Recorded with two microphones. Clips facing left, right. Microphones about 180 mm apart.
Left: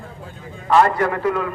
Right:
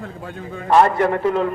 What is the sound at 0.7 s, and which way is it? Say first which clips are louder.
Speech: right 1 dB; 25° right (ahead or behind).